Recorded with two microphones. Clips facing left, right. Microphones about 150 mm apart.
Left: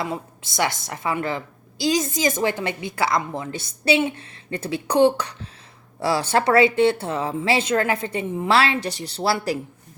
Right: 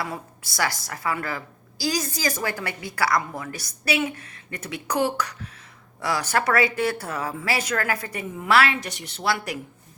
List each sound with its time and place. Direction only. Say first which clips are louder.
0.0 s a woman's voice: left 4 dB; 20° left (ahead or behind)